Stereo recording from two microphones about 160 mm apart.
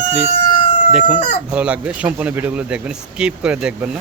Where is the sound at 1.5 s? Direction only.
5° right (ahead or behind).